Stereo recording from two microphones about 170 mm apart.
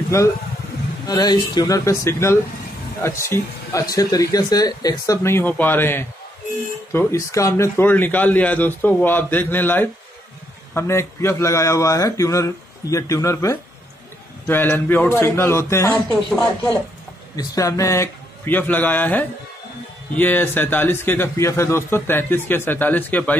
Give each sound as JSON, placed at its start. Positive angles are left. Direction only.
{"t": 1.0, "sound": "speech", "side_deg": 25}
{"t": 16.3, "sound": "speech", "side_deg": 5}
{"t": 17.4, "sound": "speech", "side_deg": 20}